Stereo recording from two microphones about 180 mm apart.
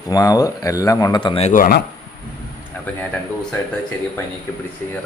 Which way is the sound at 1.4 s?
50° left (ahead or behind).